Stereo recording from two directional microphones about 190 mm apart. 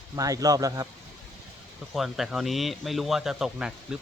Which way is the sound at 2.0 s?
Centre (ahead or behind).